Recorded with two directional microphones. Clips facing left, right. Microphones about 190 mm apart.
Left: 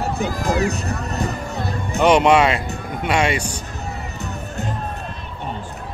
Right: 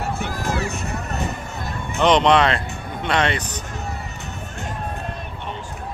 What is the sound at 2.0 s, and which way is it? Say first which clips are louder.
Speech: left 2 dB; 10° left (ahead or behind).